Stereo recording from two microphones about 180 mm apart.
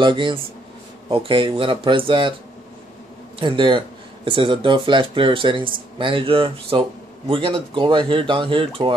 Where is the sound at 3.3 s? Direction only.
25° right (ahead or behind).